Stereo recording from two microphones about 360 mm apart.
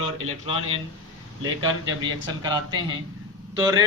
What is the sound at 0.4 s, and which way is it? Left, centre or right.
Speech, centre.